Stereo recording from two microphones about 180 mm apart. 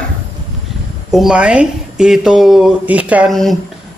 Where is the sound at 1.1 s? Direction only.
5° right (ahead or behind).